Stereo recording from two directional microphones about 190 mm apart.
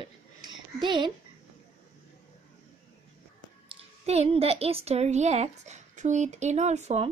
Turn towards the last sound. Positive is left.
turn(degrees=-35)  # may be behind; listen again after turning